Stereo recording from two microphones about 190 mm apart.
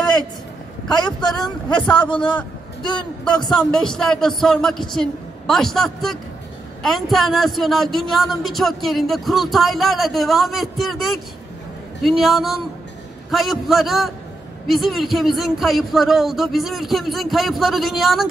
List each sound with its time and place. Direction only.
0.9 s a man's voice: 20° left (ahead or behind)
3.4 s speech: 5° left (ahead or behind)